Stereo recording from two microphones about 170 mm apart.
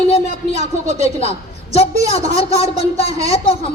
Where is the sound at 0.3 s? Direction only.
45° right (ahead or behind).